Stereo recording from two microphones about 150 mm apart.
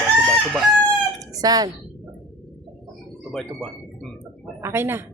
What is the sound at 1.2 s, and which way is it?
Chicken, 25° right (ahead or behind).